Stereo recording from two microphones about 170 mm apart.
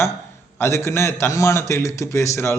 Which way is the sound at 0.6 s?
15° left (ahead or behind).